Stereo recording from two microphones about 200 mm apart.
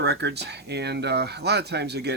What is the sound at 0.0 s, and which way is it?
Speech, 55° right (ahead or behind).